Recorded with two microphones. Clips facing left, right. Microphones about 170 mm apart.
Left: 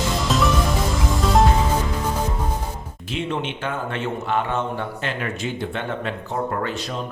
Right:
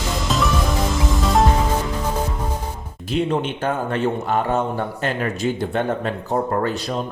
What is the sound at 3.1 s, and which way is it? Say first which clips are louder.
A man's voice: right 5 dB; 40° right (ahead or behind).